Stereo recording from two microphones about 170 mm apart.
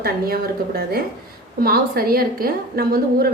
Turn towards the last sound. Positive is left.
turn(degrees=-60)  # may be behind; listen again after turning